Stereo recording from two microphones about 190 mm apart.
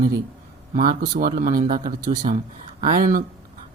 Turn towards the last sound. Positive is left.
turn(degrees=-45)  # may be behind; listen again after turning